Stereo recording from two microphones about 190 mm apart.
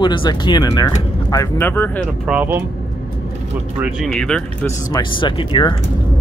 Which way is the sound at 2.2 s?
10° right (ahead or behind).